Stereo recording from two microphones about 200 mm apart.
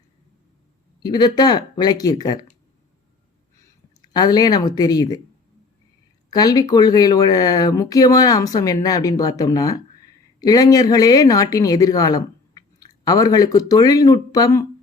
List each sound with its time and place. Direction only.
1.0 s speech: 20° left (ahead or behind)
4.0 s speech: 20° left (ahead or behind)
6.3 s speech: 20° left (ahead or behind)